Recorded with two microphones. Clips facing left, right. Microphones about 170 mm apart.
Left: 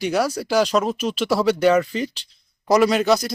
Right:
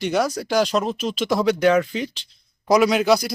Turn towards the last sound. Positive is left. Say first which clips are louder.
# even
turn(degrees=0)  # may be behind; listen again after turning